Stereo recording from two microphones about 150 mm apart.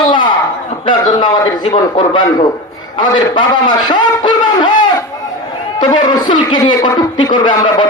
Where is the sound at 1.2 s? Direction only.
30° left (ahead or behind).